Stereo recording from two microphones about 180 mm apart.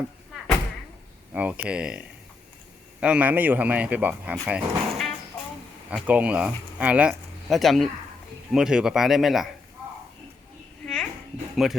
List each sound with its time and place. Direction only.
1.3 s speech: 10° right (ahead or behind)
10.8 s a sound: 5° left (ahead or behind)
11.5 s speech: centre (ahead or behind)